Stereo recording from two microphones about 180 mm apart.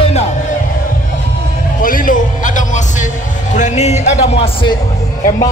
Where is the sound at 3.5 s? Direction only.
40° left (ahead or behind).